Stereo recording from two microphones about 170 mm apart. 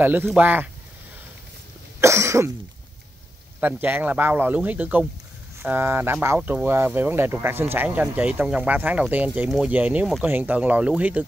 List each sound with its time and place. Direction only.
0.0 s speech: 10° right (ahead or behind)
2.0 s cough: 15° right (ahead or behind)
3.8 s speech: 10° right (ahead or behind)